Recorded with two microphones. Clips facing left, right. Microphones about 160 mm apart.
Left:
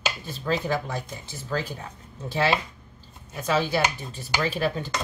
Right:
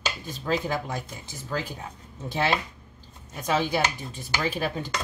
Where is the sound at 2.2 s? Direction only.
20° right (ahead or behind).